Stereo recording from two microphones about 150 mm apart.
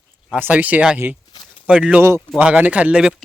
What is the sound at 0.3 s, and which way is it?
Speech, 10° right (ahead or behind).